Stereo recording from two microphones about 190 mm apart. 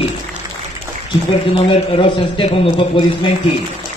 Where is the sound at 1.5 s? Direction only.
25° left (ahead or behind).